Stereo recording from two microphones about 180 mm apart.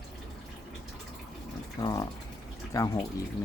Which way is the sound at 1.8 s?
20° left (ahead or behind).